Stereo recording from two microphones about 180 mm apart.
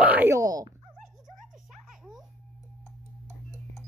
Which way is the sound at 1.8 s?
5° right (ahead or behind).